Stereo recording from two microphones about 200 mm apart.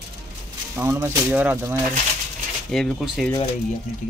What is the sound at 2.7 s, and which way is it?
Speech, centre (ahead or behind).